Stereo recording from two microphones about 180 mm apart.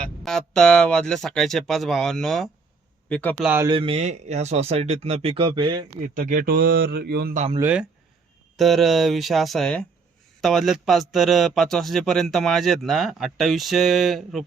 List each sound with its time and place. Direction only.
0.2 s a man's voice: centre (ahead or behind)
3.4 s speech: 10° right (ahead or behind)
3.7 s speech: 30° right (ahead or behind)
6.1 s speech: 50° right (ahead or behind)
8.5 s a man's voice: centre (ahead or behind)